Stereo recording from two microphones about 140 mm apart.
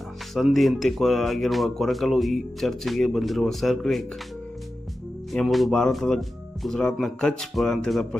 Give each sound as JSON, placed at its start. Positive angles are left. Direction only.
{"t": 0.3, "sound": "speech", "side_deg": 0}
{"t": 5.3, "sound": "speech", "side_deg": 0}